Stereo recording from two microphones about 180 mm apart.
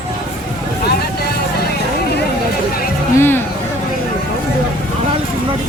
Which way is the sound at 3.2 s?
10° left (ahead or behind).